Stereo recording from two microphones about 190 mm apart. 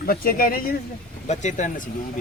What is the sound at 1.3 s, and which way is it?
Speech, 40° left (ahead or behind).